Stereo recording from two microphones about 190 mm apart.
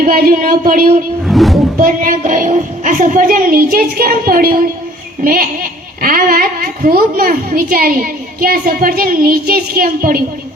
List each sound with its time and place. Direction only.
0.0 s a woman's voice: 50° right (ahead or behind)
1.3 s speech: centre (ahead or behind)
1.8 s a woman's voice: 45° right (ahead or behind)